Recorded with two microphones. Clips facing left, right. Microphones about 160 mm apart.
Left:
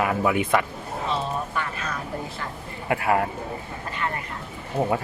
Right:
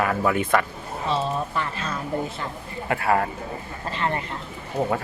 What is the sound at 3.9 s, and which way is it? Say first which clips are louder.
Vehicle: right 4 dB; 30° right (ahead or behind).